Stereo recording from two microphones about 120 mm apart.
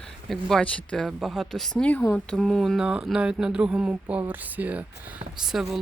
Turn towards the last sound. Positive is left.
turn(degrees=0)  # may be behind; listen again after turning